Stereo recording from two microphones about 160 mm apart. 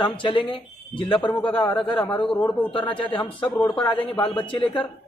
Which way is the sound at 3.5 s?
10° left (ahead or behind).